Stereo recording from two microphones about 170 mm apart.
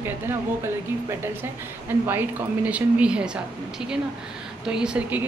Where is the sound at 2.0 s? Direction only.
10° right (ahead or behind).